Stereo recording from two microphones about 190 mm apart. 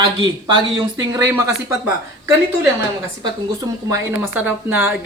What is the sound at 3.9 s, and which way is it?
Speech, 15° right (ahead or behind).